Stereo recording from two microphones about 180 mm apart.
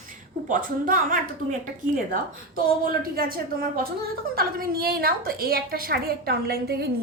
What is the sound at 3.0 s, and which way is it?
A woman's voice, 55° right (ahead or behind).